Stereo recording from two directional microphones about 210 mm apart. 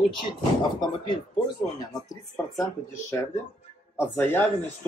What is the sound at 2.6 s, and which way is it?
Speech, 15° left (ahead or behind).